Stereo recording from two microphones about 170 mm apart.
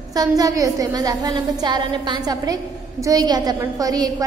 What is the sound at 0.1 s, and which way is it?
A woman's voice, 20° right (ahead or behind).